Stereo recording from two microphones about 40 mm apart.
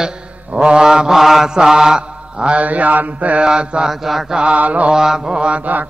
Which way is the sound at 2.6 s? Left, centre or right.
Right.